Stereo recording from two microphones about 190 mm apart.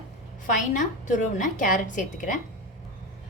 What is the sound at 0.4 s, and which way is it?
A woman's voice, 40° left (ahead or behind).